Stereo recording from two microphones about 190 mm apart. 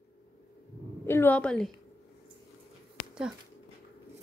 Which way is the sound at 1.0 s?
10° left (ahead or behind).